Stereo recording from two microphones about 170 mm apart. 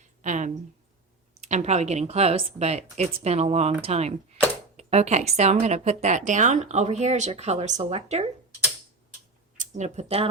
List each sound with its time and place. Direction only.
0.0 s a sound: 45° right (ahead or behind)
1.4 s a woman's voice: 45° right (ahead or behind)
9.6 s speech: 45° right (ahead or behind)